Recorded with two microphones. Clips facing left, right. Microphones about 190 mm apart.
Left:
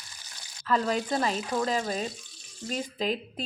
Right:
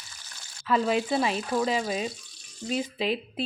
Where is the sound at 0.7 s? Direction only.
5° right (ahead or behind).